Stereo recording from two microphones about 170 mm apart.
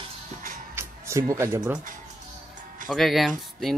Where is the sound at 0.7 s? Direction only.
15° right (ahead or behind).